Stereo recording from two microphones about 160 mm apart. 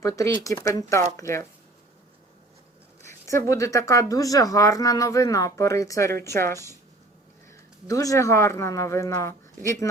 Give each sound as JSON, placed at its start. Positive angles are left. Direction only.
{"t": 0.0, "sound": "speech", "side_deg": 20}
{"t": 3.1, "sound": "speech", "side_deg": 20}